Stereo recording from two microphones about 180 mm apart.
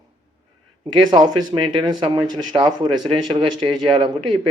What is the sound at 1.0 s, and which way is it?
Speech, 25° right (ahead or behind).